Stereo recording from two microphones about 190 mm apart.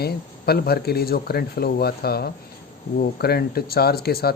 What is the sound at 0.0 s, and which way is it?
Speech, 55° left (ahead or behind).